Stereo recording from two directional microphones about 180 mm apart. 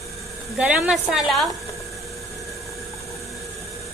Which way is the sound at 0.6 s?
5° right (ahead or behind).